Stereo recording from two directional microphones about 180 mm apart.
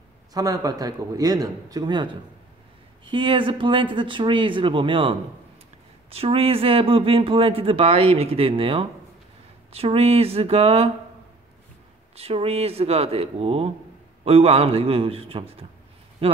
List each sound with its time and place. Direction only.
0.3 s speech: 20° right (ahead or behind)
3.1 s a man's voice: 30° right (ahead or behind)
12.2 s a man's voice: 35° right (ahead or behind)